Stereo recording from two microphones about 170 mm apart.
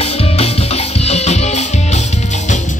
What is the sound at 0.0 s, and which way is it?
Music, 35° left (ahead or behind).